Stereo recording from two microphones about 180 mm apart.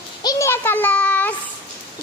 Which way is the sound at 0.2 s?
20° left (ahead or behind).